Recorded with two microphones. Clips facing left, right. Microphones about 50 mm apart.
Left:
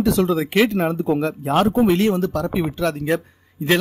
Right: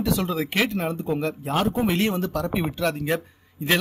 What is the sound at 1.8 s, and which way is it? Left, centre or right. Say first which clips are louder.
Speech: left 6 dB; centre.